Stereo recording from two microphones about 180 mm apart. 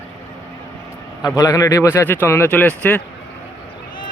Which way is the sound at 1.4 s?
20° left (ahead or behind).